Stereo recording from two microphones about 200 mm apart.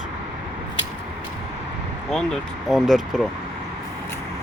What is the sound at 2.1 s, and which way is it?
Speech, 5° left (ahead or behind).